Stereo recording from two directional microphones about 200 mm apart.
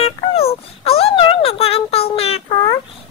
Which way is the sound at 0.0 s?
30° left (ahead or behind).